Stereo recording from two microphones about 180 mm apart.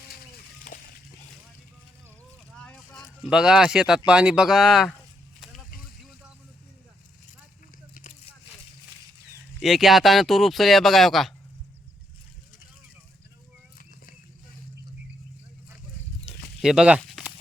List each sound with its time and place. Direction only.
0.6 s slosh: 50° left (ahead or behind)
2.6 s a sound: 5° left (ahead or behind)
3.2 s speech: 5° right (ahead or behind)
9.6 s speech: centre (ahead or behind)
16.6 s speech: 5° right (ahead or behind)
17.0 s a sound: centre (ahead or behind)